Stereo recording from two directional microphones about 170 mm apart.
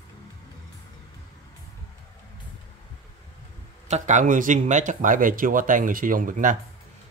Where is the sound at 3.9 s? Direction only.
45° right (ahead or behind).